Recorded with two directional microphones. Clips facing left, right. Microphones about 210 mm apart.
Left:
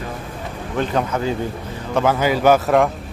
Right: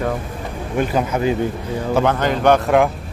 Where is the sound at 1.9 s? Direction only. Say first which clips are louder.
Even; centre (ahead or behind).